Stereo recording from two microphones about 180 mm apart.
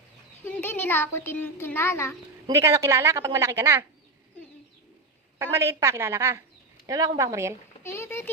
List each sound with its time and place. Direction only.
0.4 s speech: 10° left (ahead or behind)
2.5 s a woman's voice: 15° right (ahead or behind)
5.4 s a woman's voice: 15° right (ahead or behind)
7.9 s speech: 15° left (ahead or behind)